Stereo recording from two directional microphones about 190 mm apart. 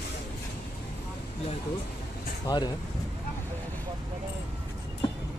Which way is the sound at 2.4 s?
20° left (ahead or behind).